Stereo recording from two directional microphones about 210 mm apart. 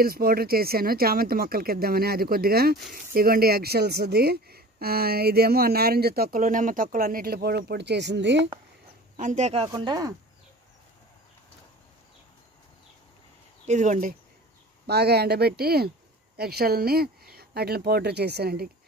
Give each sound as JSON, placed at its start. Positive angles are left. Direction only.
{"t": 0.0, "sound": "speech", "side_deg": -45}
{"t": 9.1, "sound": "speech", "side_deg": -35}
{"t": 13.7, "sound": "speech", "side_deg": -35}
{"t": 14.9, "sound": "speech", "side_deg": -50}